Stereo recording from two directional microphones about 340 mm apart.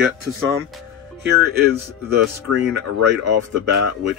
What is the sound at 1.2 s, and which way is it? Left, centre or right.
Speech, right.